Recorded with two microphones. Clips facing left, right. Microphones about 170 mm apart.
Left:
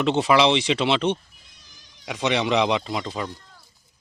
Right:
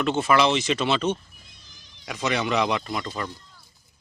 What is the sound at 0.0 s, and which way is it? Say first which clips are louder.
A man's voice: left 2 dB; 20° left (ahead or behind).